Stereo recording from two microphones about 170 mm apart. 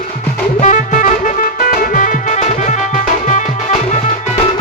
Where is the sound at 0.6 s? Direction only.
45° left (ahead or behind).